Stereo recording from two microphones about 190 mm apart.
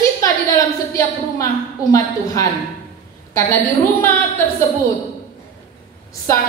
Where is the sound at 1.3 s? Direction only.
15° left (ahead or behind).